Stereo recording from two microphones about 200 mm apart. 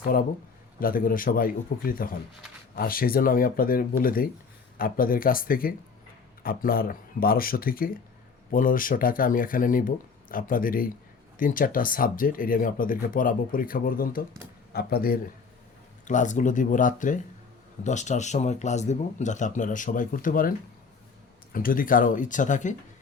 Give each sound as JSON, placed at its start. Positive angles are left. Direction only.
{"t": 0.8, "sound": "speech", "side_deg": 45}
{"t": 16.0, "sound": "speech", "side_deg": 40}
{"t": 21.5, "sound": "speech", "side_deg": 45}